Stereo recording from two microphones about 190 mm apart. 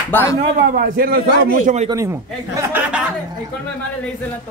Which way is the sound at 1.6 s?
35° right (ahead or behind).